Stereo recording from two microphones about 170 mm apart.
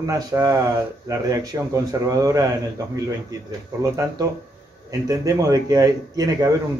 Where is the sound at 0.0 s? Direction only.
20° right (ahead or behind).